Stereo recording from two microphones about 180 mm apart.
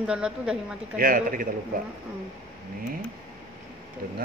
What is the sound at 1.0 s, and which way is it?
Speech, 50° right (ahead or behind).